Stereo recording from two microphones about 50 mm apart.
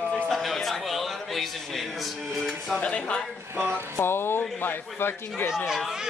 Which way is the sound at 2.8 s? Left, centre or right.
Left.